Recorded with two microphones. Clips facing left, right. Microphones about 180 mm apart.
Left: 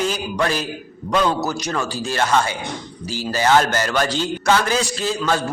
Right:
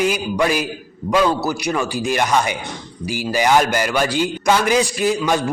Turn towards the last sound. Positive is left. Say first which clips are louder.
# right 3 dB
turn(degrees=-15)  # may be behind; listen again after turning